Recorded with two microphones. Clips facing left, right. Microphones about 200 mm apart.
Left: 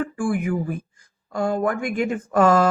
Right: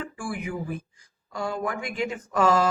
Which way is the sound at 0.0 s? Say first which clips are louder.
Left 9 dB; 50° left (ahead or behind).